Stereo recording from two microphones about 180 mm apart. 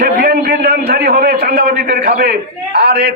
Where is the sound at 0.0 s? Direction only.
60° right (ahead or behind).